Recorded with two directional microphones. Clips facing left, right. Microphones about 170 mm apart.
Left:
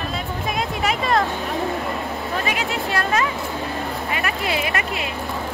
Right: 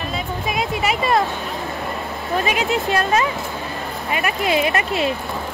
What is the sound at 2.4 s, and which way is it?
Speech, 20° right (ahead or behind).